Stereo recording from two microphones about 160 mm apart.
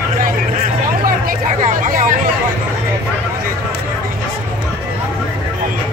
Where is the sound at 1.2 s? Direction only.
55° right (ahead or behind).